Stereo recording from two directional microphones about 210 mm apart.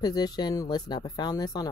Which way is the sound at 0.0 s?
20° left (ahead or behind).